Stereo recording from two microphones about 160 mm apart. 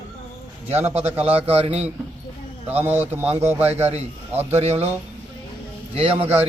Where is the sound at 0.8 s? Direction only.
40° right (ahead or behind).